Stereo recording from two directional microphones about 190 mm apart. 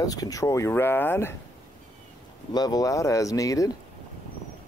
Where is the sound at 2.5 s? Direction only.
20° left (ahead or behind).